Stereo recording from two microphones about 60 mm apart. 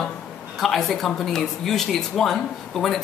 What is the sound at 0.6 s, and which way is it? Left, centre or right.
Speech, centre.